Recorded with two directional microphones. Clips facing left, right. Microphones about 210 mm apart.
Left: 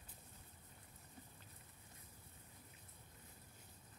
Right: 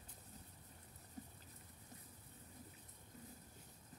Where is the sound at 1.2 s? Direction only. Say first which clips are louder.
Right 8 dB; 40° right (ahead or behind).